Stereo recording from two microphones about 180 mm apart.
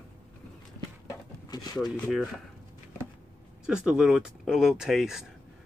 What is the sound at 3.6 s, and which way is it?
Speech, 5° right (ahead or behind).